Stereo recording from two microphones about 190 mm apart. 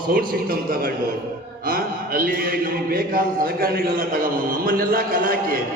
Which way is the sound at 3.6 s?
50° right (ahead or behind).